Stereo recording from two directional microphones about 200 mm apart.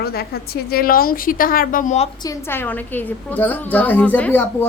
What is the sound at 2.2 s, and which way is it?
A woman's voice, 15° left (ahead or behind).